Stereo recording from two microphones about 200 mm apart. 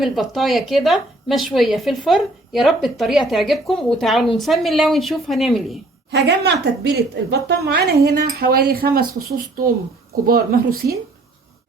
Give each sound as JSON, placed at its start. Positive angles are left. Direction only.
{"t": 0.0, "sound": "a woman's voice", "side_deg": 0}
{"t": 6.1, "sound": "a woman's voice", "side_deg": -60}
{"t": 10.2, "sound": "a woman's voice", "side_deg": -50}